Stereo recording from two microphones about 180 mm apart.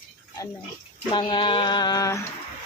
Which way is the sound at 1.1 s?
25° left (ahead or behind).